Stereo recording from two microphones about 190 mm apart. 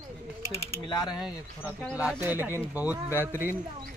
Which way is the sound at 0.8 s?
20° left (ahead or behind).